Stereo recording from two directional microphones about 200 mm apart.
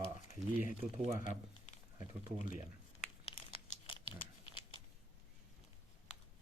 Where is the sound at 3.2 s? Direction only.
30° left (ahead or behind).